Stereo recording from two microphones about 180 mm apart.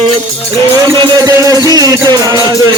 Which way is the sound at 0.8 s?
20° right (ahead or behind).